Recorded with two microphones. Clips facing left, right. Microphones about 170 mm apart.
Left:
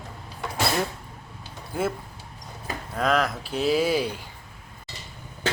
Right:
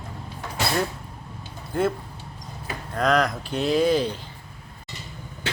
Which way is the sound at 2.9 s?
5° left (ahead or behind).